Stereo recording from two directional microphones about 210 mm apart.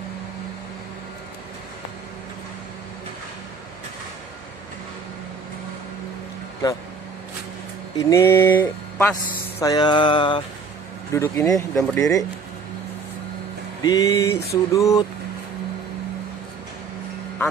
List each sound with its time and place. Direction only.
8.0 s speech: 15° left (ahead or behind)
13.8 s speech: 15° left (ahead or behind)